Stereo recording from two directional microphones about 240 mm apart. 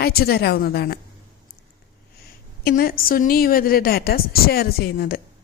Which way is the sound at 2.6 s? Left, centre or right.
Left.